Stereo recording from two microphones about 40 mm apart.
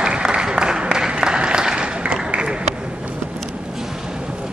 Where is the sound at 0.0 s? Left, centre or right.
Right.